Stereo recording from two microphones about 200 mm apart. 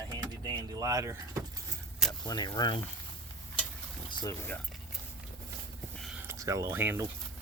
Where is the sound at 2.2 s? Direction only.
20° left (ahead or behind).